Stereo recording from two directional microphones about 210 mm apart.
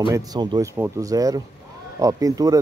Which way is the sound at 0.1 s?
15° right (ahead or behind).